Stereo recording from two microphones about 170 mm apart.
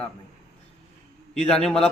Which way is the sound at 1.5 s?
5° left (ahead or behind).